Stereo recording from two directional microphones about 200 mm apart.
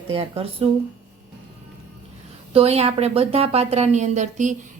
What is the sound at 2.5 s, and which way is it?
A woman's voice, 30° right (ahead or behind).